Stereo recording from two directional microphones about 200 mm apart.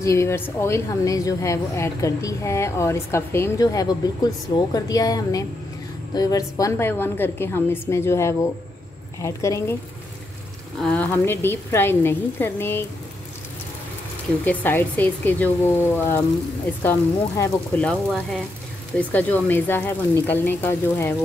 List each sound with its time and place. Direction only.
0.0 s a woman's voice: 15° left (ahead or behind)
10.8 s a woman's voice: 5° left (ahead or behind)
14.4 s a woman's voice: 10° left (ahead or behind)